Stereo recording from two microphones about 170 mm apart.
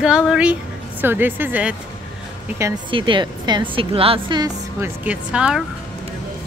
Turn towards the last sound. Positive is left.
turn(degrees=-5)  # may be behind; listen again after turning